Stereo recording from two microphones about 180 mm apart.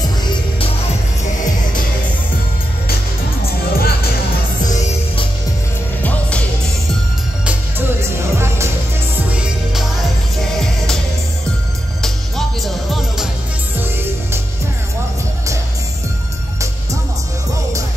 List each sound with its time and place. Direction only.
3.7 s music: 55° left (ahead or behind)
8.0 s music: 15° right (ahead or behind)
12.0 s music: centre (ahead or behind)